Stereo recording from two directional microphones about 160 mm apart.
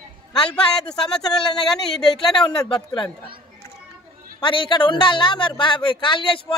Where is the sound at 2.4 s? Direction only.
30° left (ahead or behind).